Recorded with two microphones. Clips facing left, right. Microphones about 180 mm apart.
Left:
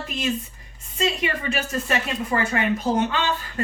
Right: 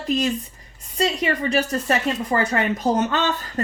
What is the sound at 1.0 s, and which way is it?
A woman's voice, 40° right (ahead or behind).